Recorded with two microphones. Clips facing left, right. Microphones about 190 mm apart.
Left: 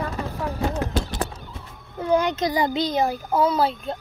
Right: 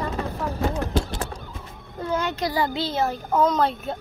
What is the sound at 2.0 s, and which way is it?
A child's voice, 15° left (ahead or behind).